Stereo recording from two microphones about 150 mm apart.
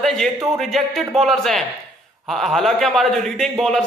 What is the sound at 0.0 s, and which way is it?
A man's voice, centre (ahead or behind).